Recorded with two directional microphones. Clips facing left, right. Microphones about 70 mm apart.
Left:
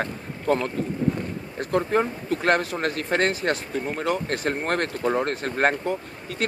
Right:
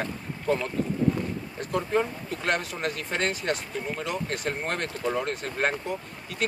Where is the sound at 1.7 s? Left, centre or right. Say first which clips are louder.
Left 4 dB; left.